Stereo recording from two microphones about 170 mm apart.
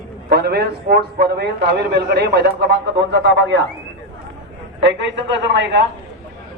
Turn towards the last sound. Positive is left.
turn(degrees=-90)